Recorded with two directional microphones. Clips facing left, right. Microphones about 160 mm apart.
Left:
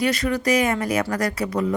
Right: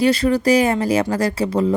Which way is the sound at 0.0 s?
30° right (ahead or behind).